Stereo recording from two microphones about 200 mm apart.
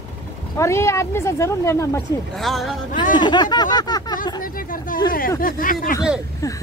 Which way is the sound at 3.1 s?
20° left (ahead or behind).